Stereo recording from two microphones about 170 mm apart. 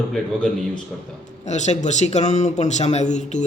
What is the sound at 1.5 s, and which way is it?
Speech, 45° left (ahead or behind).